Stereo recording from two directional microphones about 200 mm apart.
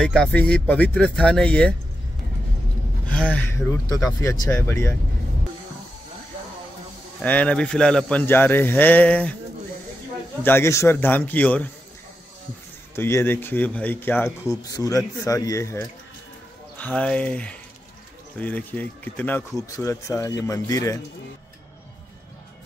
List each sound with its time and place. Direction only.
0.0 s speech: 5° left (ahead or behind)
3.1 s speech: 5° left (ahead or behind)
7.2 s speech: 5° left (ahead or behind)
10.4 s speech: 10° left (ahead or behind)
12.9 s speech: 10° left (ahead or behind)